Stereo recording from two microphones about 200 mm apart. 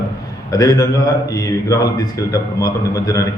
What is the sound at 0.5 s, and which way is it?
A man's voice, 15° left (ahead or behind).